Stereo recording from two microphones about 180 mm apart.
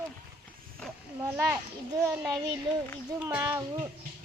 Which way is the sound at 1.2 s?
15° right (ahead or behind).